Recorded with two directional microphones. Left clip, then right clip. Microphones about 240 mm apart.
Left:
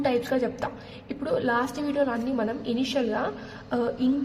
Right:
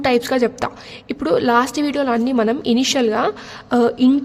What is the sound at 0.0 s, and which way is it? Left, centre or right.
A woman's voice, right.